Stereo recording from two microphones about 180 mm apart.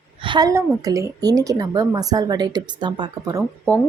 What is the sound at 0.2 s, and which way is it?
A woman's voice, 25° right (ahead or behind).